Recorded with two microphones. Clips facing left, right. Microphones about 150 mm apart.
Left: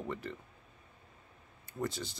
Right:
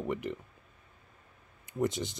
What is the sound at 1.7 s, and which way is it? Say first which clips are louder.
Speech: right 6 dB; 20° right (ahead or behind).